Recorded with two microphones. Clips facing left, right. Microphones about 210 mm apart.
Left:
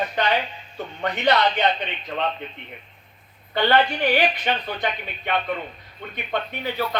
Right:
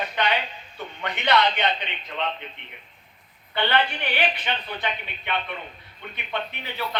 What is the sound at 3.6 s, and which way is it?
A man's voice, 40° left (ahead or behind).